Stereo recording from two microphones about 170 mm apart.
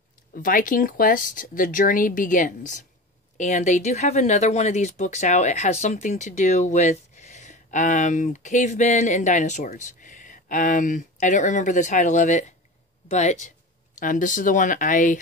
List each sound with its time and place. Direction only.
0.3 s speech: 55° left (ahead or behind)